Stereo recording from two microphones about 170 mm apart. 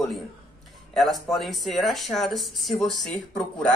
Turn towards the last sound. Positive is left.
turn(degrees=5)  # may be behind; listen again after turning